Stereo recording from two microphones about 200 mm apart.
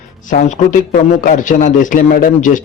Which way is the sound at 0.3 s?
35° left (ahead or behind).